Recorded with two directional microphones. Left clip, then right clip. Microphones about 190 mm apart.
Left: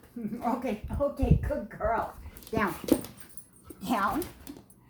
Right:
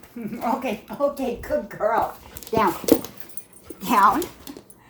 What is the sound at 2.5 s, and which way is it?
Speech, 20° right (ahead or behind).